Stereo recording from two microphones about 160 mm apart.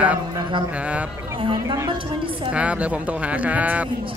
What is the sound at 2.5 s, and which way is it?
Speech, 10° right (ahead or behind).